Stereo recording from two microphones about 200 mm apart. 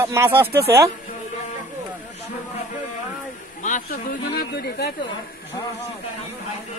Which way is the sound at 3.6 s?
40° left (ahead or behind).